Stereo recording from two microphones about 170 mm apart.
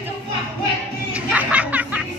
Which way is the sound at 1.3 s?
10° right (ahead or behind).